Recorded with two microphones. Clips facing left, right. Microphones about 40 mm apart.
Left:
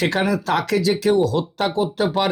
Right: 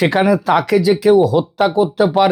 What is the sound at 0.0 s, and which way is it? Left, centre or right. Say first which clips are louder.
Speech: right 6 dB; centre.